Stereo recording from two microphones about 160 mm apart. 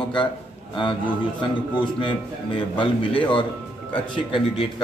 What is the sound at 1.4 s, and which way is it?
Speech, 30° left (ahead or behind).